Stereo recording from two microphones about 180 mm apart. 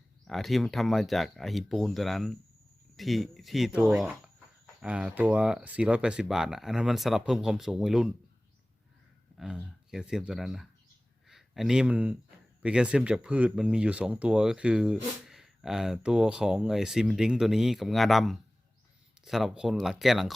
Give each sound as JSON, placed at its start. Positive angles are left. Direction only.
{"t": 0.3, "sound": "speech", "side_deg": 0}
{"t": 9.9, "sound": "speech", "side_deg": -5}